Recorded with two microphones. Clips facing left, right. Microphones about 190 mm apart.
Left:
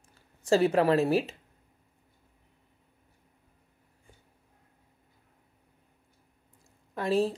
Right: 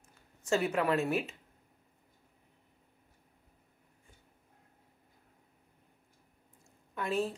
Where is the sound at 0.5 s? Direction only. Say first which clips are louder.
Left 7 dB; 35° left (ahead or behind).